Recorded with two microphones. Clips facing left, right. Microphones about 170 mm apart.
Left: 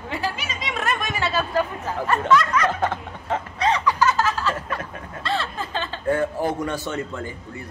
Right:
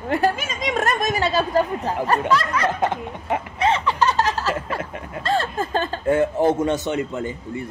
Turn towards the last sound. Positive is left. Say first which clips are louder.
# right 4 dB
turn(degrees=-20)  # may be behind; listen again after turning